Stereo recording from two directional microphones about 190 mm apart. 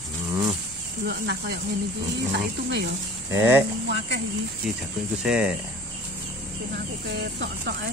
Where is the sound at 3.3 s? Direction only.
10° right (ahead or behind).